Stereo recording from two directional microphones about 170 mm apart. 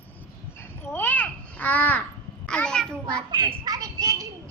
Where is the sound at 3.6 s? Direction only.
20° right (ahead or behind).